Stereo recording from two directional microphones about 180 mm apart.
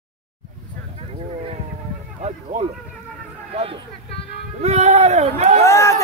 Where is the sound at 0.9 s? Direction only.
35° right (ahead or behind).